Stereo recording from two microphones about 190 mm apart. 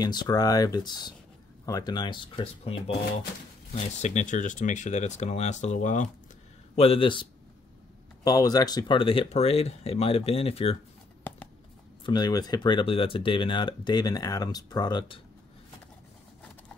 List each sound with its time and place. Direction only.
0.0 s speech: 20° left (ahead or behind); by 6.0 s 40° left (ahead or behind)
6.7 s speech: 30° left (ahead or behind)
12.1 s speech: 20° left (ahead or behind)